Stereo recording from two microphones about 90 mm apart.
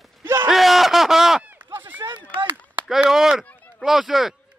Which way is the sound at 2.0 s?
60° right (ahead or behind).